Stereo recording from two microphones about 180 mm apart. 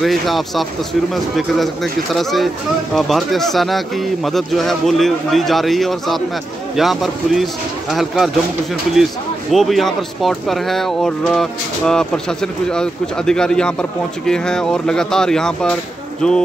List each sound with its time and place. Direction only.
0.0 s speech: centre (ahead or behind)